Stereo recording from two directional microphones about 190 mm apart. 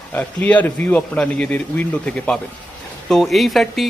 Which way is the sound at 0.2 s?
5° left (ahead or behind).